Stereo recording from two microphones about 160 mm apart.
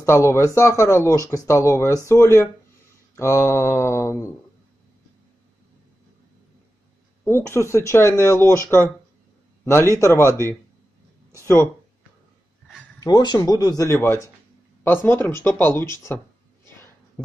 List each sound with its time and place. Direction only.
0.0 s speech: 15° left (ahead or behind)
7.2 s speech: 15° left (ahead or behind)
9.9 s speech: 15° left (ahead or behind)
13.0 s speech: 25° left (ahead or behind)